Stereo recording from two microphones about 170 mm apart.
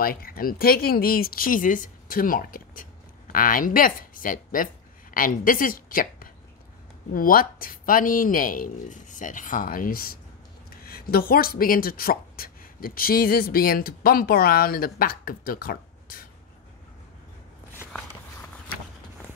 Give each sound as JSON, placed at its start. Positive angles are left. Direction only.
{"t": 0.0, "sound": "a woman's voice", "side_deg": 60}